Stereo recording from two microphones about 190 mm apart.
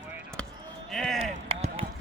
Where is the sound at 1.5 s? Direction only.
30° right (ahead or behind).